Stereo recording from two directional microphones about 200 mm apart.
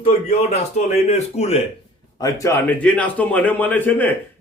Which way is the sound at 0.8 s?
35° left (ahead or behind).